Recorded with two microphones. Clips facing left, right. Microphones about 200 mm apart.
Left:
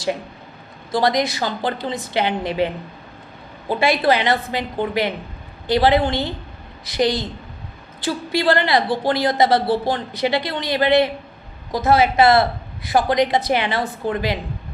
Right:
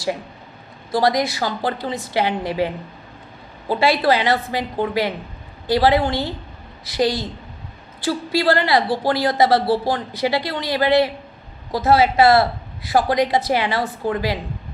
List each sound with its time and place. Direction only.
0.9 s a woman's voice: 20° left (ahead or behind)
5.7 s a woman's voice: 20° left (ahead or behind)